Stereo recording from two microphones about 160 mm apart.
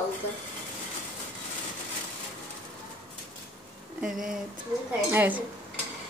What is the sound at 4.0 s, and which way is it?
Speech, 5° right (ahead or behind).